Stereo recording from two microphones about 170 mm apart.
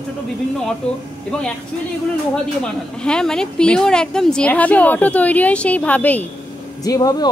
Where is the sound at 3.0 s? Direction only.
5° left (ahead or behind).